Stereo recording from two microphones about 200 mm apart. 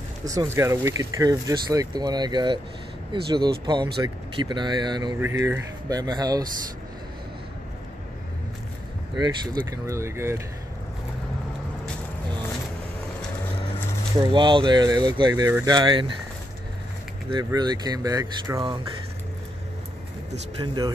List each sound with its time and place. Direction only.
0.2 s speech: 15° right (ahead or behind)
9.8 s speech: 15° right (ahead or behind)
14.3 s speech: 25° right (ahead or behind)
17.4 s speech: 20° right (ahead or behind)
20.6 s speech: 20° right (ahead or behind)